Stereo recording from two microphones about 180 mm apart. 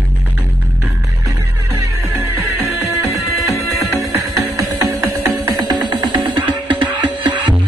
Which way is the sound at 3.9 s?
15° right (ahead or behind).